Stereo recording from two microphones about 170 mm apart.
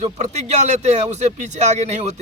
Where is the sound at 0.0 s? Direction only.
40° right (ahead or behind).